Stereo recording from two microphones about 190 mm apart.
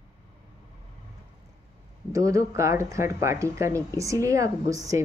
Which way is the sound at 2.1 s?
15° right (ahead or behind).